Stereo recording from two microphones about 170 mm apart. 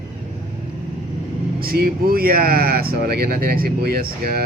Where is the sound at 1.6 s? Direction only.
60° right (ahead or behind).